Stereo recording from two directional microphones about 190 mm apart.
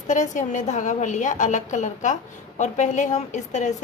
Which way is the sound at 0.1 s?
40° left (ahead or behind).